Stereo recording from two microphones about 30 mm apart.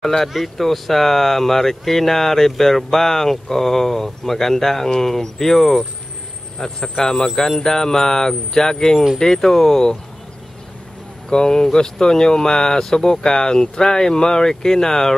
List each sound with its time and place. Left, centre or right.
0.2 s speech: centre
11.2 s speech: left